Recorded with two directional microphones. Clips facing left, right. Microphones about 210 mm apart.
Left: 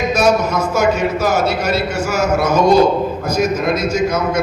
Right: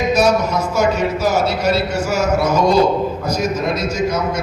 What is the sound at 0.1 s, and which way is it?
A man's voice, 50° left (ahead or behind).